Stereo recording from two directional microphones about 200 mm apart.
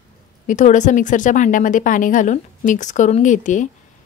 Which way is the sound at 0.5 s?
40° left (ahead or behind).